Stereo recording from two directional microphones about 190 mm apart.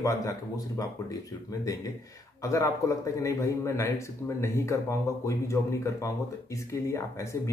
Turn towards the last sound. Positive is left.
turn(degrees=15)  # may be behind; listen again after turning